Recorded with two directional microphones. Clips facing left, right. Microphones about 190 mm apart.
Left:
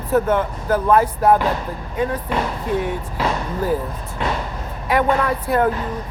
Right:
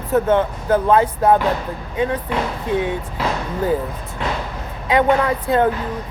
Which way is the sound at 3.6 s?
20° right (ahead or behind).